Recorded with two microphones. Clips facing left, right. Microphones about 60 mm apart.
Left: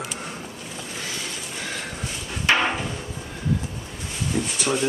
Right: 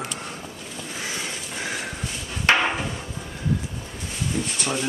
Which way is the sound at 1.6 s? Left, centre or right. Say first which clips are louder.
Right 3 dB; centre.